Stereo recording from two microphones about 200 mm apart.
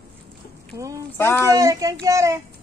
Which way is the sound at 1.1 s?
10° left (ahead or behind).